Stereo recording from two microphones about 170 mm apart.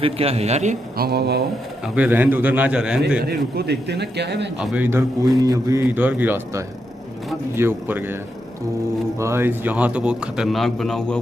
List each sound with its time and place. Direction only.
0.0 s speech: 35° right (ahead or behind)
0.9 s speech: 70° right (ahead or behind)
2.0 s a man's voice: 10° right (ahead or behind)
3.3 s speech: 75° right (ahead or behind)
4.6 s a man's voice: 5° right (ahead or behind)
4.8 s a man's voice: 15° right (ahead or behind)
9.2 s a man's voice: 15° right (ahead or behind); by 11.1 s centre (ahead or behind)